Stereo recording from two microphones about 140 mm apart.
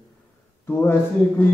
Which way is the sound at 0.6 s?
15° left (ahead or behind).